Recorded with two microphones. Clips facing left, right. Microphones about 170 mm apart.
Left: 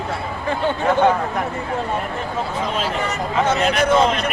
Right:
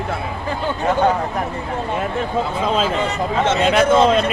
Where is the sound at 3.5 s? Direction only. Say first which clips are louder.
Right 3 dB; 25° right (ahead or behind).